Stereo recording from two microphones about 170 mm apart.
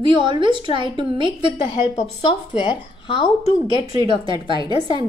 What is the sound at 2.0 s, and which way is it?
Speech, 30° left (ahead or behind).